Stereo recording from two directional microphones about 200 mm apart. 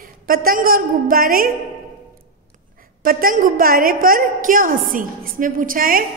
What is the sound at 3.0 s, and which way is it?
A woman's voice, 45° right (ahead or behind).